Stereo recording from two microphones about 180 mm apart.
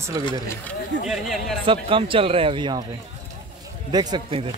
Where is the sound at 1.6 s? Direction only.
30° right (ahead or behind).